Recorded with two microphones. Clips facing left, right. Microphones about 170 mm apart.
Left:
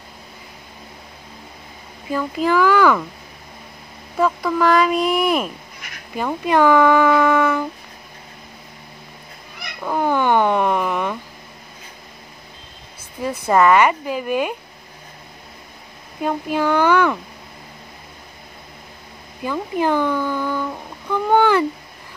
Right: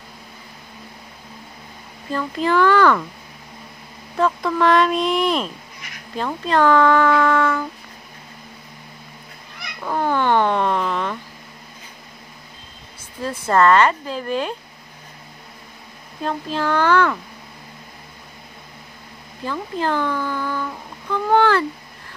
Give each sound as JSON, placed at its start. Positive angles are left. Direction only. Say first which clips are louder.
{"t": 2.0, "sound": "speech", "louder": "left 2 dB", "side_deg": 5}
{"t": 4.2, "sound": "speech", "louder": "left 1 dB", "side_deg": 5}
{"t": 9.8, "sound": "a sound", "louder": "left 1 dB", "side_deg": 10}
{"t": 13.2, "sound": "speech", "louder": "left 1 dB", "side_deg": 10}
{"t": 16.2, "sound": "speech", "louder": "left 3 dB", "side_deg": 15}
{"t": 19.4, "sound": "speech", "louder": "left 3 dB", "side_deg": 15}